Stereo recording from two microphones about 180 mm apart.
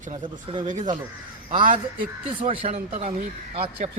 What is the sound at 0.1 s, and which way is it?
Speech, 25° right (ahead or behind).